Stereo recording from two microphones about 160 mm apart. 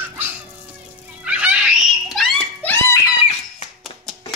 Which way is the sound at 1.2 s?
5° right (ahead or behind).